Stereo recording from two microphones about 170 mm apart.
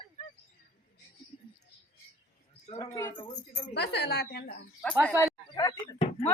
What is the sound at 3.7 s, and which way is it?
Speech, 80° left.